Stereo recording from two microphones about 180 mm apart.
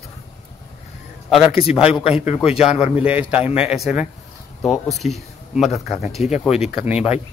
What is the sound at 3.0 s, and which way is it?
Speech, 5° right (ahead or behind).